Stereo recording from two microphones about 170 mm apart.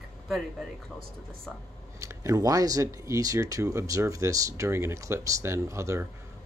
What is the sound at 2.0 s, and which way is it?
Speech, 20° right (ahead or behind).